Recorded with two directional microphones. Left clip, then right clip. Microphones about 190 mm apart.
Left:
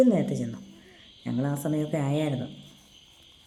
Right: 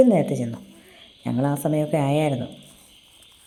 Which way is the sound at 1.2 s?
15° right (ahead or behind).